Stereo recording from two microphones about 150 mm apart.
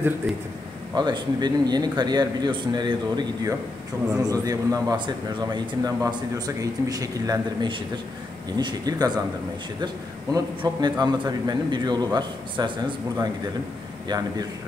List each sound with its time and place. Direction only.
0.9 s a man's voice: 30° right (ahead or behind)
10.3 s a man's voice: 30° right (ahead or behind)